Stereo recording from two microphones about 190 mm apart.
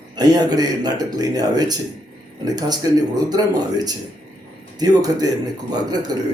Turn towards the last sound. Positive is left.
turn(degrees=-20)  # may be behind; listen again after turning